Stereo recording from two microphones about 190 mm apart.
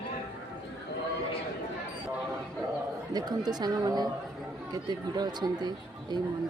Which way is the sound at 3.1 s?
20° right (ahead or behind).